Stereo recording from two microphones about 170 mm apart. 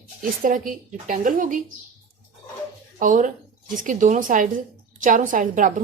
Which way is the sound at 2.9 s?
50° right (ahead or behind).